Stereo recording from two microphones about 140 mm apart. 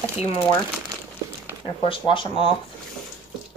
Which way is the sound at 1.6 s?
40° left (ahead or behind).